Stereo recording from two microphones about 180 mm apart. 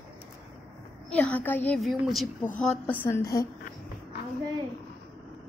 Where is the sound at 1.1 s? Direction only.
5° left (ahead or behind).